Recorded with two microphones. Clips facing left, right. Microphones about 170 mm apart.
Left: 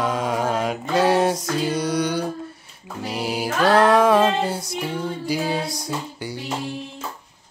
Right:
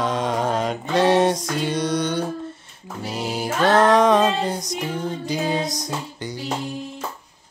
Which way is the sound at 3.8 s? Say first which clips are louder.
Even; 5° left (ahead or behind).